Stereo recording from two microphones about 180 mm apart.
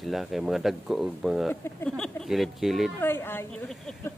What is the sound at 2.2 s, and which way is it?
Speech, centre (ahead or behind).